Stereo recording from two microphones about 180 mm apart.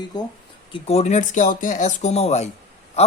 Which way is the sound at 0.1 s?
25° left (ahead or behind).